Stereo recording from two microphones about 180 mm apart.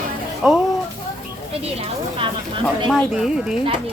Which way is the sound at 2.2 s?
30° right (ahead or behind).